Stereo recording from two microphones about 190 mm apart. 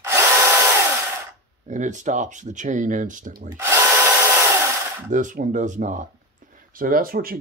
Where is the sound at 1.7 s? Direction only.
40° right (ahead or behind).